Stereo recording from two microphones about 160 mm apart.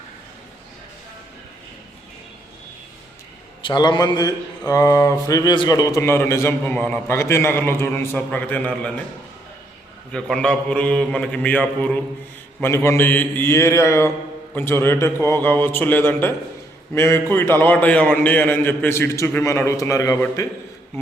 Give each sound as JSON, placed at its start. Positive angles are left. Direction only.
{"t": 3.6, "sound": "speech", "side_deg": 30}
{"t": 10.1, "sound": "a man's voice", "side_deg": 5}